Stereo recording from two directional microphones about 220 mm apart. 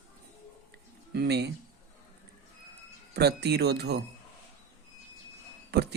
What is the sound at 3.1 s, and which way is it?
Speech, 50° right (ahead or behind).